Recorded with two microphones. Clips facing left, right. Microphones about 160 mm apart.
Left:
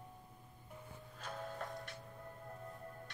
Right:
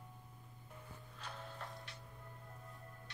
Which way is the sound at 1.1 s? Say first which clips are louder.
Left 6 dB; 45° left (ahead or behind).